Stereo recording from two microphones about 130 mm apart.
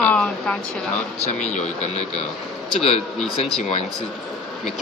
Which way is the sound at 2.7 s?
50° left (ahead or behind).